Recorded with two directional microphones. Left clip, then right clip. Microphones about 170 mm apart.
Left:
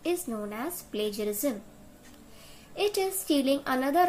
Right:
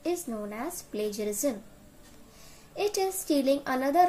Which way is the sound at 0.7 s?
20° right (ahead or behind).